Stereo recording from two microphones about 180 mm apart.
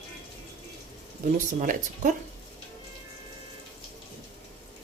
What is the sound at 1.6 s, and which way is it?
Speech, 45° right (ahead or behind).